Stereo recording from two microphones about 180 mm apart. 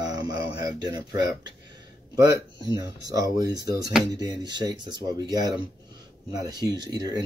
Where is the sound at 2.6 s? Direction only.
20° right (ahead or behind).